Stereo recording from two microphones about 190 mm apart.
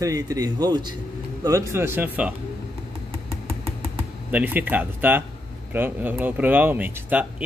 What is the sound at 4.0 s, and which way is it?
Speech, 10° right (ahead or behind).